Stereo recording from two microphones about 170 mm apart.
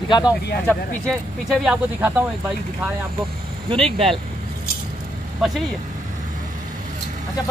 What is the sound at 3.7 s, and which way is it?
Speech, 35° right (ahead or behind).